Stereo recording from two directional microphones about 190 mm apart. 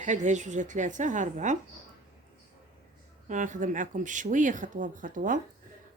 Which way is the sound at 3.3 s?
40° right (ahead or behind).